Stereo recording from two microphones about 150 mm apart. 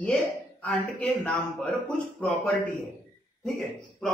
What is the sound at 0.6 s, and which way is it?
A man's voice, 10° left (ahead or behind).